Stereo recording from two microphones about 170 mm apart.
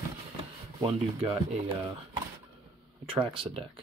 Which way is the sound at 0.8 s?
30° right (ahead or behind).